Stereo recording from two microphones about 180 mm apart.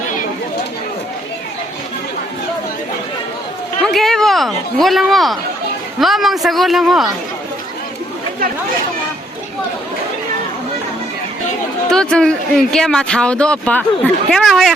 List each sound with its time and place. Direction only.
3.9 s a man's voice: centre (ahead or behind)
11.9 s a man's voice: 5° left (ahead or behind)